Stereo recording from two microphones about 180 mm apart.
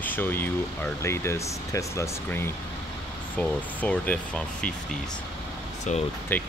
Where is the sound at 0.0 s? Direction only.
10° left (ahead or behind).